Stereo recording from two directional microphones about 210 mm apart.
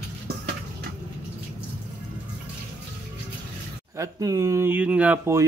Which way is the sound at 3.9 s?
15° right (ahead or behind).